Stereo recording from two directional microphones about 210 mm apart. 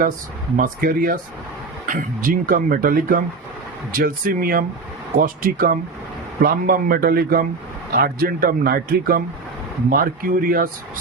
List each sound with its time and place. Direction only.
0.5 s a man's voice: 40° right (ahead or behind)